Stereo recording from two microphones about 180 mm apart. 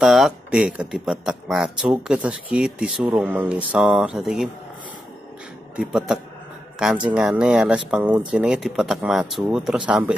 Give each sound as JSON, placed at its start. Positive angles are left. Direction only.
{"t": 0.0, "sound": "speech", "side_deg": -5}
{"t": 5.8, "sound": "speech", "side_deg": -5}